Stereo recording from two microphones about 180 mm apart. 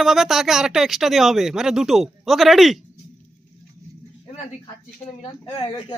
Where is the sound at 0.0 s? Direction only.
Centre (ahead or behind).